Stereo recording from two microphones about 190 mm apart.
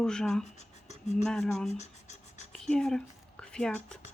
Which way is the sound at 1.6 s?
35° left (ahead or behind).